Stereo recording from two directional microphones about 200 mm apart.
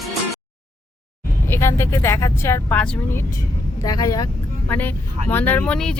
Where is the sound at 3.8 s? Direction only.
20° left (ahead or behind).